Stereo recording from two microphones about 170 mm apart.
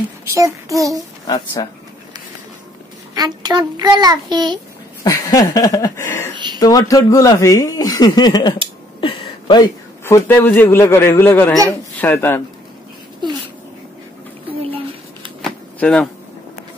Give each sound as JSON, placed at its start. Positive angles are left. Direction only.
{"t": 0.3, "sound": "a child's voice", "side_deg": -20}
{"t": 1.2, "sound": "a man's voice", "side_deg": 25}
{"t": 3.2, "sound": "a child's voice", "side_deg": -25}
{"t": 5.0, "sound": "a man's voice", "side_deg": 20}
{"t": 6.3, "sound": "a sound", "side_deg": -25}
{"t": 6.6, "sound": "a man's voice", "side_deg": 20}
{"t": 9.0, "sound": "a sound", "side_deg": 25}
{"t": 10.0, "sound": "a man's voice", "side_deg": 10}
{"t": 15.4, "sound": "shuffling cards", "side_deg": 5}